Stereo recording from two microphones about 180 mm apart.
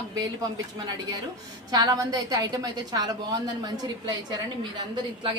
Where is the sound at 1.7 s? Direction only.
20° right (ahead or behind).